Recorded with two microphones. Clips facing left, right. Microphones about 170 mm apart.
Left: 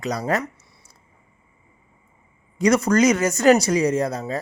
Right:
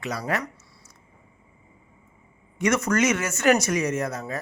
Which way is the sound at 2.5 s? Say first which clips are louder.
Left 5 dB; 35° left (ahead or behind).